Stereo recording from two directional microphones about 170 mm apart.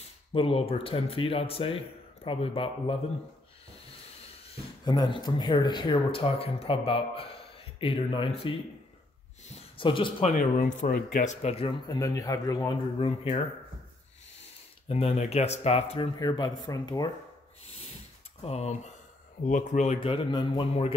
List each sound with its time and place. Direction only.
0.3 s speech: 35° left (ahead or behind)
4.5 s speech: 25° left (ahead or behind)
9.8 s speech: 30° left (ahead or behind)
10.3 s speech: 55° left (ahead or behind)
11.6 s a man's voice: 20° left (ahead or behind)
14.9 s speech: 35° left (ahead or behind)
16.2 s a man's voice: 25° left (ahead or behind)
17.6 s a sound: 40° left (ahead or behind)
18.4 s speech: 40° left (ahead or behind)
20.0 s speech: 30° left (ahead or behind)